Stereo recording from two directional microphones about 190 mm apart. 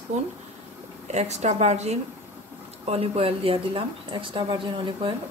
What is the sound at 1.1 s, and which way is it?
Speech, 35° right (ahead or behind).